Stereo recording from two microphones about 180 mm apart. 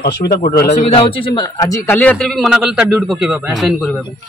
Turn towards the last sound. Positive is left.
turn(degrees=0)  # may be behind; listen again after turning